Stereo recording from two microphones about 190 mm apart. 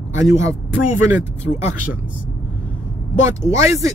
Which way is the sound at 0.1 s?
15° right (ahead or behind).